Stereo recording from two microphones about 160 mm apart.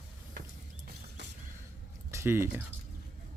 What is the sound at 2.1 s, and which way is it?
Speech, 15° right (ahead or behind).